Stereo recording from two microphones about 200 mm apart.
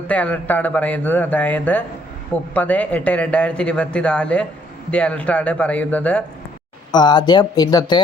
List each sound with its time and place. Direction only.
0.1 s a man's voice: 5° left (ahead or behind)
6.9 s speech: 20° left (ahead or behind)